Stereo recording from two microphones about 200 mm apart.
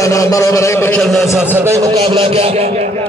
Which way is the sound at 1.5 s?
15° right (ahead or behind).